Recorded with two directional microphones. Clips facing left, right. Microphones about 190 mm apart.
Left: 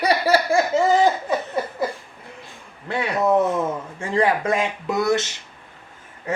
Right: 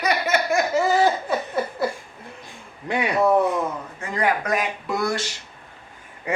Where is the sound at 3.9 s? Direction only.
30° left (ahead or behind).